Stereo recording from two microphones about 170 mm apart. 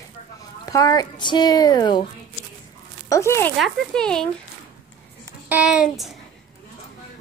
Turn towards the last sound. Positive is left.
turn(degrees=-5)  # may be behind; listen again after turning